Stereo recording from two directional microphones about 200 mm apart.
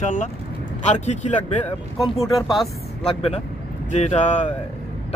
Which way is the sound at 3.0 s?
30° left (ahead or behind).